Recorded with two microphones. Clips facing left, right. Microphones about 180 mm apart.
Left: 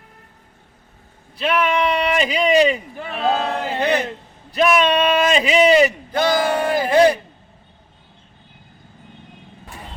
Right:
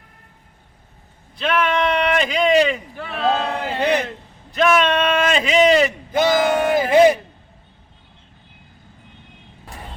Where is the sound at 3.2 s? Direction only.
10° left (ahead or behind).